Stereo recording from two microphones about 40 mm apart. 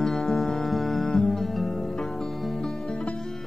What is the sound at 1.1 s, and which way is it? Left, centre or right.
Music, centre.